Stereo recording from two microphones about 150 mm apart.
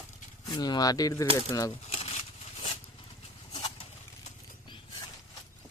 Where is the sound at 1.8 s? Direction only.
40° left (ahead or behind).